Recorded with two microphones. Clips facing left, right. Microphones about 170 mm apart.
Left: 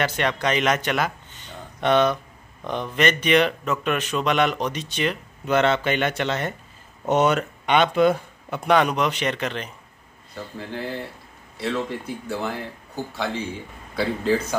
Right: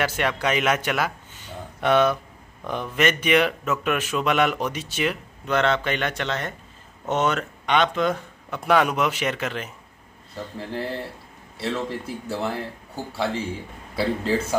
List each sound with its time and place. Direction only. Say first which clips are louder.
0.0 s speech: left 1 dB; 5° right (ahead or behind)
5.5 s speech: left 2 dB; 5° left (ahead or behind)
10.6 s speech: right 2 dB; 30° right (ahead or behind)
12.3 s speech: right 1 dB; centre (ahead or behind)